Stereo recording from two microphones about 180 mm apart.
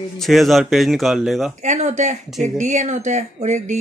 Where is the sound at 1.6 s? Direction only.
40° right (ahead or behind).